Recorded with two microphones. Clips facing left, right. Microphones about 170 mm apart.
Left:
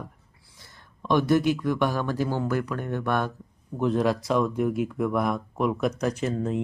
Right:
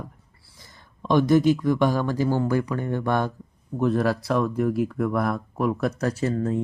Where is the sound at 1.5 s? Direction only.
10° right (ahead or behind).